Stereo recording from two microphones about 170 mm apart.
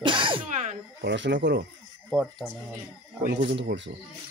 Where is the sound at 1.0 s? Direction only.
90° right.